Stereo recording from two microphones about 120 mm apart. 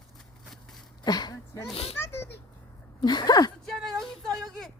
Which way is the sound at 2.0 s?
20° left (ahead or behind).